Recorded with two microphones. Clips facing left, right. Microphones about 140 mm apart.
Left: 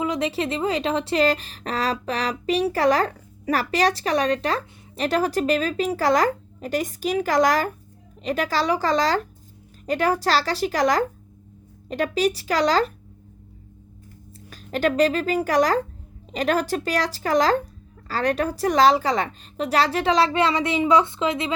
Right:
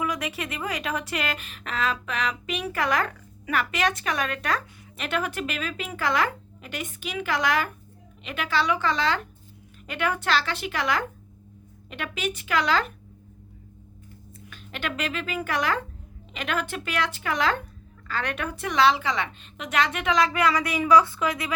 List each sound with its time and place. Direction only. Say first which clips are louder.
0.0 s speech: left 6 dB; 25° left (ahead or behind)
14.5 s speech: left 11 dB; 40° left (ahead or behind)